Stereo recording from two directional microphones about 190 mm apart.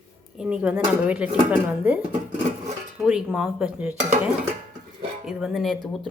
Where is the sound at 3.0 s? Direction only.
Centre (ahead or behind).